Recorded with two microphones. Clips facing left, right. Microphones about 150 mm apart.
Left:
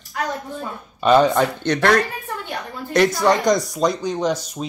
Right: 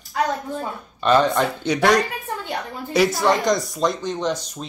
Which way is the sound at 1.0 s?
5° left (ahead or behind).